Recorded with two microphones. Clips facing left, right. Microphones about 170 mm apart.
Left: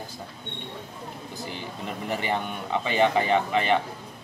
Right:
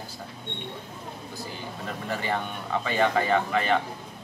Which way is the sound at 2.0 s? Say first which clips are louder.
Left 2 dB; 15° left (ahead or behind).